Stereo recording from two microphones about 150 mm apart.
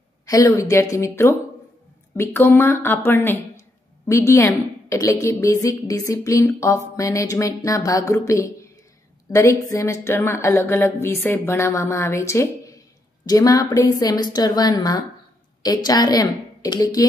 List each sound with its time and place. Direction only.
0.3 s a woman's voice: 20° left (ahead or behind)